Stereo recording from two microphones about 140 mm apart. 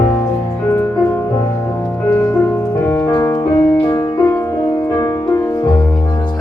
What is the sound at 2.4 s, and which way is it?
Music, 15° left (ahead or behind).